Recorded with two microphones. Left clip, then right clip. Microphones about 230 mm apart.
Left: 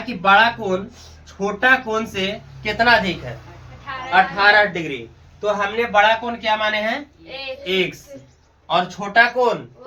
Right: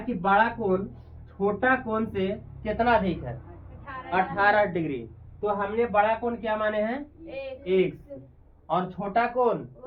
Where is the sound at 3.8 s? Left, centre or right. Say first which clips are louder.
Left 10 dB; right.